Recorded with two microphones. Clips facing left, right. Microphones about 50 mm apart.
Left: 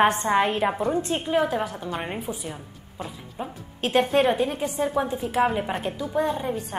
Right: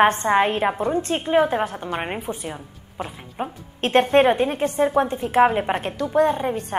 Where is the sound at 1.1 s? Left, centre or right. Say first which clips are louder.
Right 7 dB; right.